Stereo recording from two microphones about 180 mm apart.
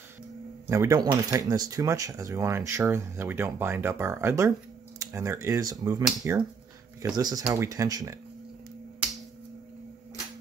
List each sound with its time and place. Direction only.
0.7 s speech: 20° right (ahead or behind)